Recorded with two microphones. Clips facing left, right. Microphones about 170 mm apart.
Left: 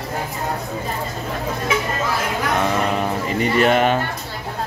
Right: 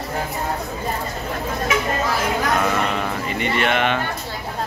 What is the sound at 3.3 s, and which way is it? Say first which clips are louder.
Speech: left 5 dB; 35° left (ahead or behind).